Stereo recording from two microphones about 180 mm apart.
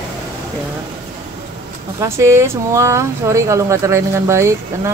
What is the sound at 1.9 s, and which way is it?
Speech, 15° right (ahead or behind).